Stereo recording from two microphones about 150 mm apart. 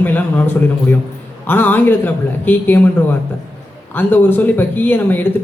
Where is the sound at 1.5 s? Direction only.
10° left (ahead or behind).